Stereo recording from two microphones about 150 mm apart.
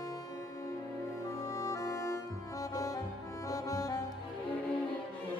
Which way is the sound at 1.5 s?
20° left (ahead or behind).